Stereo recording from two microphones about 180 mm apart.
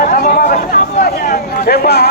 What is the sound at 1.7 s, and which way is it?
Speech, 65° left (ahead or behind).